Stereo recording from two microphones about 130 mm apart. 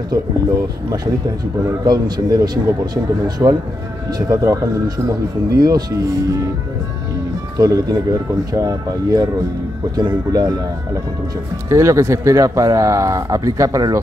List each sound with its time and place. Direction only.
1.9 s speech: 30° right (ahead or behind)
7.5 s speech: 30° right (ahead or behind)
11.7 s speech: 25° right (ahead or behind)